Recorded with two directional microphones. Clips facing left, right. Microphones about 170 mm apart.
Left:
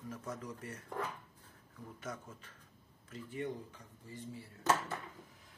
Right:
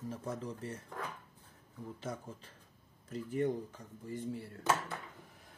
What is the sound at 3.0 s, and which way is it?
Speech, 40° right (ahead or behind).